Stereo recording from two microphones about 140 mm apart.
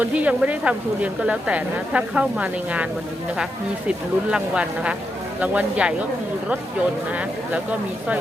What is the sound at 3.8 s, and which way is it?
A woman's voice, 5° right (ahead or behind).